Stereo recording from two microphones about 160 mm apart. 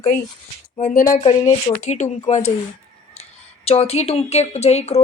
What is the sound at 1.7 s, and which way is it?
Speech, 45° left (ahead or behind).